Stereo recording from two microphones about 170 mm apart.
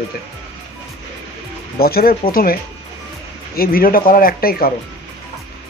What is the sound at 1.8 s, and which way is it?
Speech, 65° left (ahead or behind).